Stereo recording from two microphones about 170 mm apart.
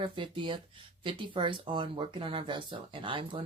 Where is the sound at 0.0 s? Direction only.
30° right (ahead or behind).